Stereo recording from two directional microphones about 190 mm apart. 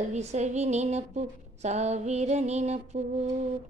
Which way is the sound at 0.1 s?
35° right (ahead or behind).